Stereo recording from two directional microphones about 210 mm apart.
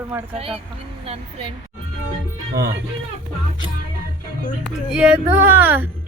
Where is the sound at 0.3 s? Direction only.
25° right (ahead or behind).